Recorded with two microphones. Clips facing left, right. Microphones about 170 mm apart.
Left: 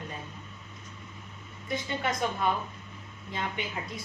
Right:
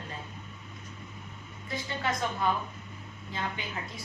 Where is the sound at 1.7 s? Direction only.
20° left (ahead or behind).